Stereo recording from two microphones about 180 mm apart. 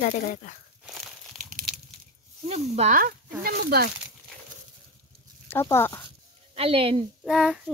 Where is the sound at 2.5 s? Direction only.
35° right (ahead or behind).